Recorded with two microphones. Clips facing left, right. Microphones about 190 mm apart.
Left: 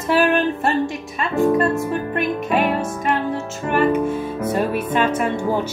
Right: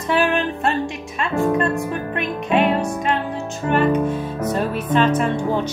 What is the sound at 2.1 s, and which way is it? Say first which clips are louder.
Music: right 2 dB; centre (ahead or behind).